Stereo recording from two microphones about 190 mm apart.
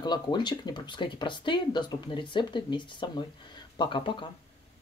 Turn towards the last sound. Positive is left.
turn(degrees=25)  # may be behind; listen again after turning